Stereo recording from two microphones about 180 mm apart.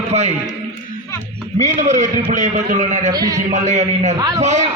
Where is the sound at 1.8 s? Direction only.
45° right (ahead or behind).